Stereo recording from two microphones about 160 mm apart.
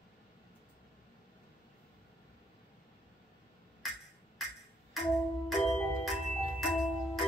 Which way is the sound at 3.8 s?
Centre (ahead or behind).